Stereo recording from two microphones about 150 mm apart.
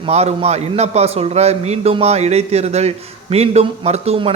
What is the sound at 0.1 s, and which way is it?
A man's voice, 45° right (ahead or behind).